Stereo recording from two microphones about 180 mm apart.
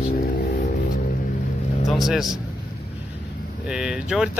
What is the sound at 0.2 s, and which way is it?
Music, 50° left (ahead or behind).